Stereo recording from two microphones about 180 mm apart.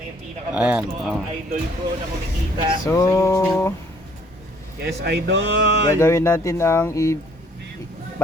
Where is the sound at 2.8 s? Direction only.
15° left (ahead or behind).